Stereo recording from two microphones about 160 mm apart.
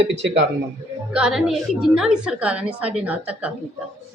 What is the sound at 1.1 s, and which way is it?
A woman's voice, 5° right (ahead or behind).